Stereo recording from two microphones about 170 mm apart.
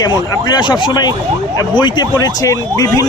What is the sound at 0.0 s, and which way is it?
Speech, 25° left (ahead or behind).